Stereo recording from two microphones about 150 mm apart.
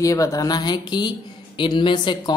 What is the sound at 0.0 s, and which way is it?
Speech, 20° left (ahead or behind).